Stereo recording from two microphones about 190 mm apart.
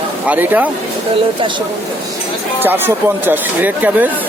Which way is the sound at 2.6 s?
10° right (ahead or behind).